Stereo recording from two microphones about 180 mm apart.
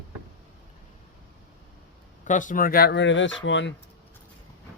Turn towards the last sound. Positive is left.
turn(degrees=90)